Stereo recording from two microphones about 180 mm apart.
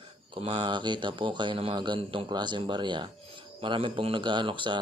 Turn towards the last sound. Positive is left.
turn(degrees=-25)  # may be behind; listen again after turning